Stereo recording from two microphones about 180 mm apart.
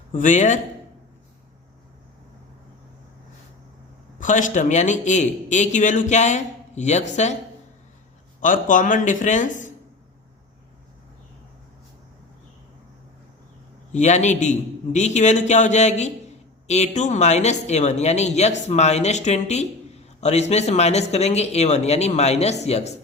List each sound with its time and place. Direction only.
0.1 s speech: 45° left (ahead or behind)
4.2 s speech: 45° left (ahead or behind)
8.4 s speech: 45° left (ahead or behind)
13.9 s speech: 40° left (ahead or behind)